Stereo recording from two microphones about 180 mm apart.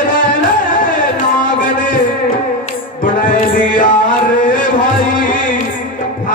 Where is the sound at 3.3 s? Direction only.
50° left (ahead or behind).